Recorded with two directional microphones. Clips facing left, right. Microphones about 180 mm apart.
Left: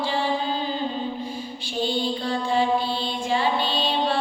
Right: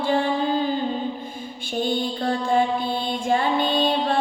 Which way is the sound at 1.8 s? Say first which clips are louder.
Right 1 dB; 50° right (ahead or behind).